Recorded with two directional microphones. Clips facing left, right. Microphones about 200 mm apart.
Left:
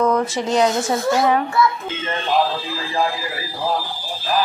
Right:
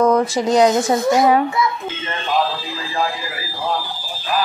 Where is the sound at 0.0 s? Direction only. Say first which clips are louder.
Right 3 dB; 35° right (ahead or behind).